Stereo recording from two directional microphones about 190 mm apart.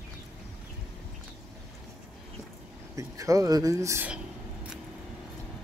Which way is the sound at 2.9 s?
15° right (ahead or behind).